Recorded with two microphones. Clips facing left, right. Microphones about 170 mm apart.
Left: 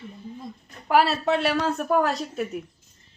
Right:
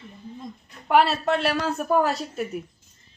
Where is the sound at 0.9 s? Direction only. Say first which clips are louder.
Right 1 dB; centre (ahead or behind).